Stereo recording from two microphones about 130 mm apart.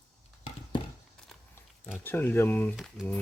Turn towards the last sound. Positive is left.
turn(degrees=0)  # may be behind; listen again after turning